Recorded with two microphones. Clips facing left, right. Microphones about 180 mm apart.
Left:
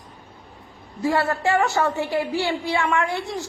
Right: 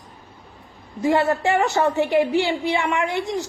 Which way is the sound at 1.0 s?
20° right (ahead or behind).